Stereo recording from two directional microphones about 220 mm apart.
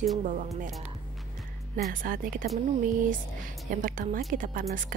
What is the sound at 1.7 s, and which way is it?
Speech, 40° right (ahead or behind).